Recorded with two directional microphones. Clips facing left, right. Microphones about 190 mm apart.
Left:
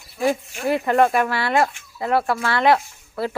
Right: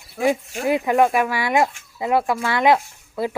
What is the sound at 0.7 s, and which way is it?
Speech, 10° right (ahead or behind).